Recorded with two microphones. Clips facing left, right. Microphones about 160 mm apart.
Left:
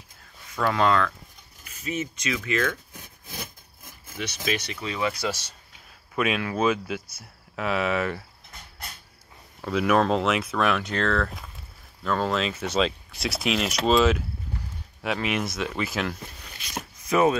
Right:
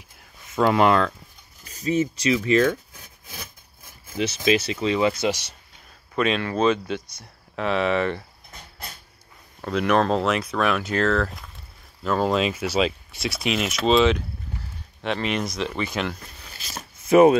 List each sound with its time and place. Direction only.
0.6 s speech: 20° right (ahead or behind)
1.6 s speech: 35° right (ahead or behind)
4.1 s speech: 25° right (ahead or behind)
6.1 s speech: 5° left (ahead or behind)
9.6 s speech: 5° left (ahead or behind)
17.0 s chopping: 25° right (ahead or behind)